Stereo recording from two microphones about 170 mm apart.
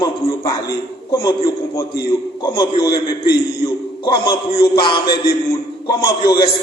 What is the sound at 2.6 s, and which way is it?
Speech, 25° left (ahead or behind).